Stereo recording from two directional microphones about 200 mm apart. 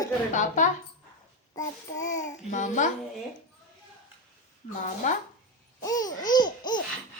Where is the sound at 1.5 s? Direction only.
15° left (ahead or behind).